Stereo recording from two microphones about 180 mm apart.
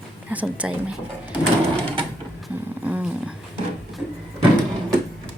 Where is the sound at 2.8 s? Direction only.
5° right (ahead or behind).